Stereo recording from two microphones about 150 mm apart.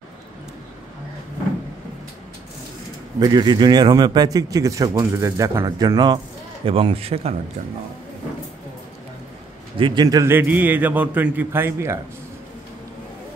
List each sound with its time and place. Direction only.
3.2 s speech: 30° right (ahead or behind)
9.8 s a man's voice: 35° right (ahead or behind)
10.0 s a man's voice: 20° right (ahead or behind)